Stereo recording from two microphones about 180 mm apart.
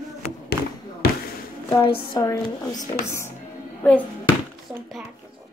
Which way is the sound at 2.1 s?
20° left (ahead or behind).